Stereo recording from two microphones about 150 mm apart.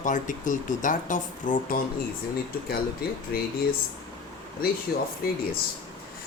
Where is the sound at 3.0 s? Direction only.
90° left.